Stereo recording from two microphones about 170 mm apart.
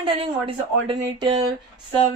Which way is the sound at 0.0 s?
30° right (ahead or behind).